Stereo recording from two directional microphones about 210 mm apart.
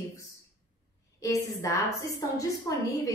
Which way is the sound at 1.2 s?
15° left (ahead or behind).